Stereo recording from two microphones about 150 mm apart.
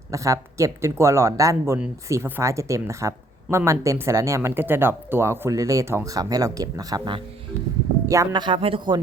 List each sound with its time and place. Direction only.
0.1 s speech: 20° right (ahead or behind)